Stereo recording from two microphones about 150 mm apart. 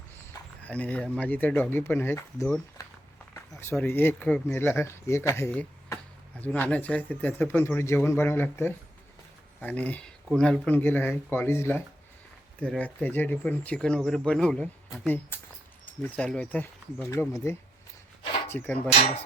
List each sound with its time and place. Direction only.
0.6 s speech: 10° left (ahead or behind)
18.9 s hammer: 40° left (ahead or behind)